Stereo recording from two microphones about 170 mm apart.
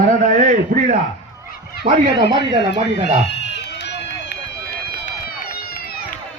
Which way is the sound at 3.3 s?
90° left.